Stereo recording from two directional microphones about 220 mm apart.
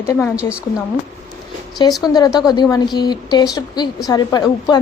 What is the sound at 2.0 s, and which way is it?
A woman's voice, 15° left (ahead or behind).